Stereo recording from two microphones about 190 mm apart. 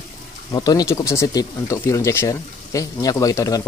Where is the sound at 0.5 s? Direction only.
20° left (ahead or behind).